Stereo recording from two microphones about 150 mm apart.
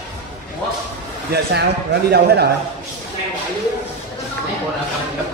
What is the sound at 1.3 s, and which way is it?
A man's voice, 90° right.